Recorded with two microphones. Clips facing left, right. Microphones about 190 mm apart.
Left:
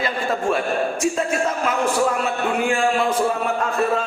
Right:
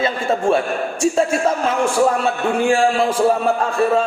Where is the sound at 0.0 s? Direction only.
25° right (ahead or behind).